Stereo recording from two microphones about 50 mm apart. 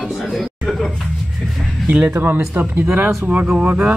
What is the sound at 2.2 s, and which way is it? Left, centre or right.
Speech, right.